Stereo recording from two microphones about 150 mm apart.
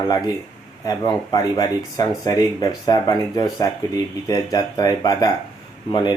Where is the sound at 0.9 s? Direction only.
25° left (ahead or behind).